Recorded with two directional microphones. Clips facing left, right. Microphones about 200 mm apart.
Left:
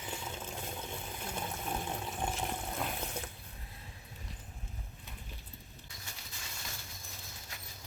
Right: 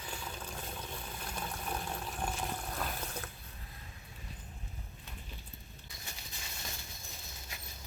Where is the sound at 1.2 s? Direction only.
20° left (ahead or behind).